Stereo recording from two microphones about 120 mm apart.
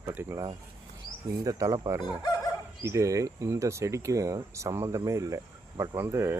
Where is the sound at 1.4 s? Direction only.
30° right (ahead or behind).